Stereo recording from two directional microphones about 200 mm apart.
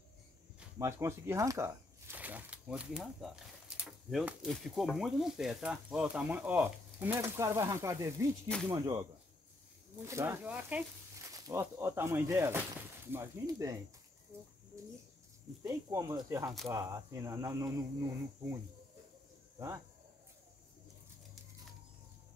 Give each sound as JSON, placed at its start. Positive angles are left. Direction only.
{"t": 0.7, "sound": "speech", "side_deg": -15}
{"t": 10.0, "sound": "speech", "side_deg": -15}
{"t": 15.6, "sound": "speech", "side_deg": -15}